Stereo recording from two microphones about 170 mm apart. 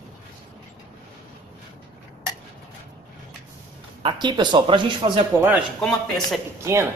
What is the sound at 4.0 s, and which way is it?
Speech, 25° right (ahead or behind).